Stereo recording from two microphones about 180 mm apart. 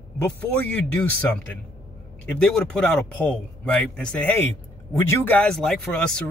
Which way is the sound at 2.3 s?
5° left (ahead or behind).